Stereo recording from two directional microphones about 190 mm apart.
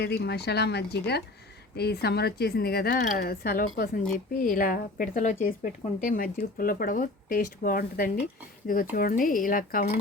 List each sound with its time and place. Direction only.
0.0 s speech: 60° left (ahead or behind)